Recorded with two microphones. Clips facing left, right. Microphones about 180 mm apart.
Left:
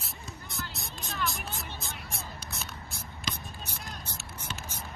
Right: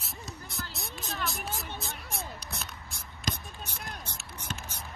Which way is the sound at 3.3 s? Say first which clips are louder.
Right 3 dB; 60° right (ahead or behind).